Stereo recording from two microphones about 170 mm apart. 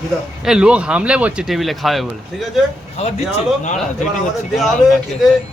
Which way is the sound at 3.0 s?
35° left (ahead or behind).